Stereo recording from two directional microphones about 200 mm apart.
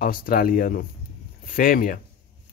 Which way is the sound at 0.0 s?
45° left (ahead or behind).